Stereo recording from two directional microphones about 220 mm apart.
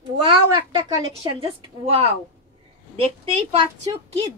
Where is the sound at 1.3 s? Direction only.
25° right (ahead or behind).